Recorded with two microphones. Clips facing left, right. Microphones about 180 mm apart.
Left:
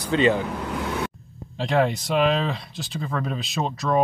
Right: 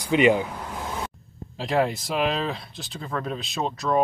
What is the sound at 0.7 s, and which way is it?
Vehicle, 70° left (ahead or behind).